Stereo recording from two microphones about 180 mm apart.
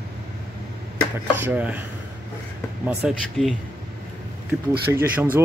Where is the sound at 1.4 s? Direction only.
10° right (ahead or behind).